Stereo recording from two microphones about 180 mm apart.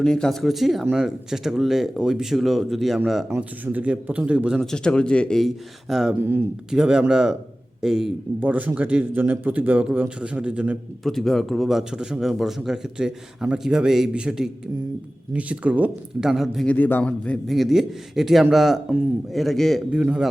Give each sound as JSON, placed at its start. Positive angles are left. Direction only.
{"t": 0.0, "sound": "a man's voice", "side_deg": 5}
{"t": 3.2, "sound": "a man's voice", "side_deg": -10}